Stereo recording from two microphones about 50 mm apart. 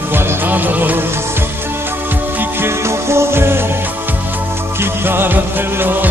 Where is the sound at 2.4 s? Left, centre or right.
Right.